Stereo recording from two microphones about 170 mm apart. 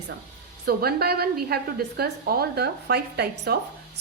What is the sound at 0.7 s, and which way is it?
A woman's voice, 65° right (ahead or behind).